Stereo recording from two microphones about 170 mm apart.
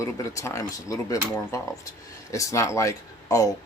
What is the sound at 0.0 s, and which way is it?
Speech, 20° left (ahead or behind).